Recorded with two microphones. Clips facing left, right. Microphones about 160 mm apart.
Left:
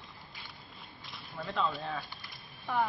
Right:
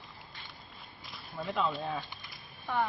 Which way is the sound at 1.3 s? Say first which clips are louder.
Right 1 dB; 20° right (ahead or behind).